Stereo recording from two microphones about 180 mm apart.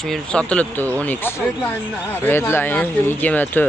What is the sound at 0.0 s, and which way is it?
Speech, 5° left (ahead or behind).